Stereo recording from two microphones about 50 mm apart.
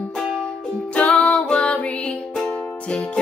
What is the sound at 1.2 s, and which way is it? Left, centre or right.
Music, left.